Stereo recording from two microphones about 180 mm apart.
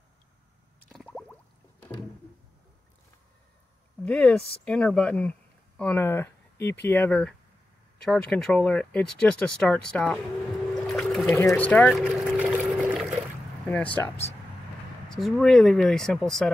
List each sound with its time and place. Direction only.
0.8 s a sound: 5° left (ahead or behind)
4.0 s speech: 5° left (ahead or behind)
10.7 s boat: centre (ahead or behind)
11.3 s speech: 10° left (ahead or behind)
12.0 s pour: 5° right (ahead or behind)
12.5 s water: 10° right (ahead or behind)
14.0 s speech: 10° left (ahead or behind)
15.0 s speech: centre (ahead or behind)